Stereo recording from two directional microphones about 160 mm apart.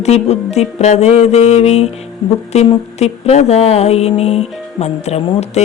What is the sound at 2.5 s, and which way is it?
Music, 40° left (ahead or behind).